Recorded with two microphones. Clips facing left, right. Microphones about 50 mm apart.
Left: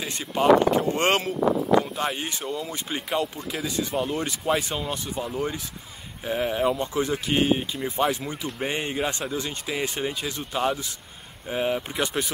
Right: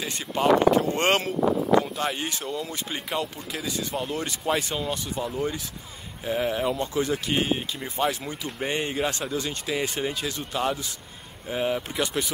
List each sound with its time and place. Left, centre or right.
0.0 s speech: centre